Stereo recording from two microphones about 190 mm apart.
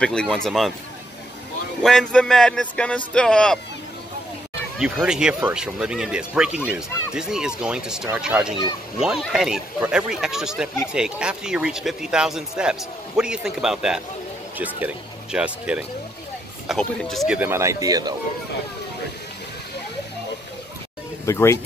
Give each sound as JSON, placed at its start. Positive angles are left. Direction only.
{"t": 0.0, "sound": "speech", "side_deg": 5}
{"t": 1.8, "sound": "speech", "side_deg": 5}
{"t": 4.7, "sound": "speech", "side_deg": -5}
{"t": 17.4, "sound": "speech", "side_deg": -15}
{"t": 21.3, "sound": "speech", "side_deg": 15}